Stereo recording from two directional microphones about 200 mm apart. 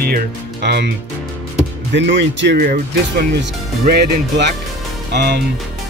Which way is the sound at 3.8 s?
50° right (ahead or behind).